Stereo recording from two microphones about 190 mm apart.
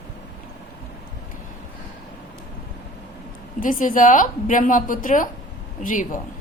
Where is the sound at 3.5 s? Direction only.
45° left (ahead or behind).